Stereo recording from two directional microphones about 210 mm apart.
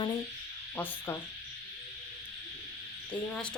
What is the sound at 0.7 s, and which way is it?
Sizzle, 10° left (ahead or behind).